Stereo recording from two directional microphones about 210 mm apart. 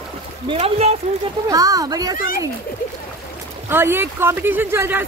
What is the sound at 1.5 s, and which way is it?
Speech, 15° right (ahead or behind).